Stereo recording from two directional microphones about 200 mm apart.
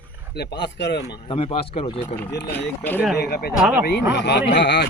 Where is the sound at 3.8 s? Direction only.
55° left (ahead or behind).